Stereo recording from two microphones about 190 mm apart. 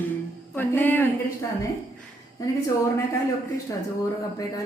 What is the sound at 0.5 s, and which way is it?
Speech, 10° left (ahead or behind).